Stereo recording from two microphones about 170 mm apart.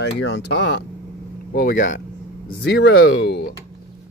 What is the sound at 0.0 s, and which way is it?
Speech, 90° left.